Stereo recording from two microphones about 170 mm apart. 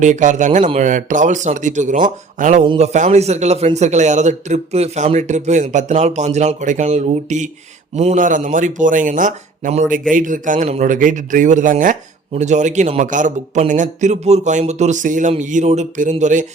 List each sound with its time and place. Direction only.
0.0 s speech: 45° right (ahead or behind)